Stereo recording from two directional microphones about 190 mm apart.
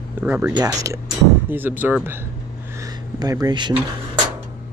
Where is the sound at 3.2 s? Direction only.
20° right (ahead or behind).